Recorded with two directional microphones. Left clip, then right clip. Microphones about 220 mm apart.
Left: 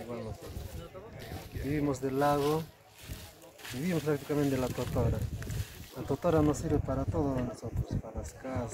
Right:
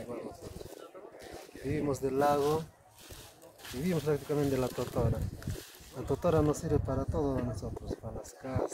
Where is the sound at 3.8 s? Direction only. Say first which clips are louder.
Even; 25° right (ahead or behind).